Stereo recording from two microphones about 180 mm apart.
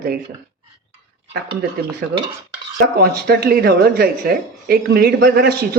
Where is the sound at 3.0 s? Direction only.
60° right (ahead or behind).